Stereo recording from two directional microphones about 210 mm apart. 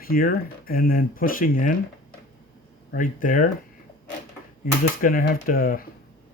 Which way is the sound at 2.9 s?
40° left (ahead or behind).